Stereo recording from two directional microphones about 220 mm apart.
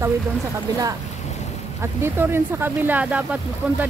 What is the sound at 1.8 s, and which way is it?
Speech, 10° right (ahead or behind).